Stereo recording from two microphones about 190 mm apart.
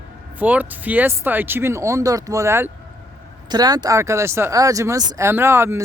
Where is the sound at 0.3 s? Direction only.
10° right (ahead or behind).